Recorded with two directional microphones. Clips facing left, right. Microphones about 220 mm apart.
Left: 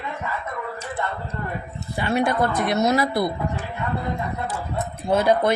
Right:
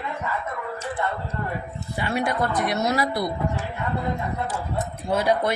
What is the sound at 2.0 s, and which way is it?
Speech, 25° left (ahead or behind).